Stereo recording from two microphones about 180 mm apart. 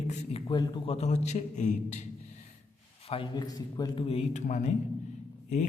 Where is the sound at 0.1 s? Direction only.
30° left (ahead or behind).